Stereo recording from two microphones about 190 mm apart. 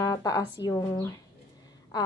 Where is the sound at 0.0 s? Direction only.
20° left (ahead or behind).